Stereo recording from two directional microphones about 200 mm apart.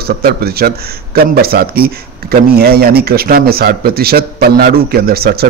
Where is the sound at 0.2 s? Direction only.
50° right (ahead or behind).